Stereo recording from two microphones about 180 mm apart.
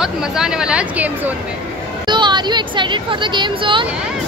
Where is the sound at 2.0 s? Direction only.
25° right (ahead or behind).